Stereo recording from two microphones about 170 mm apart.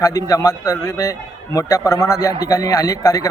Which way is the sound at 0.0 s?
20° left (ahead or behind).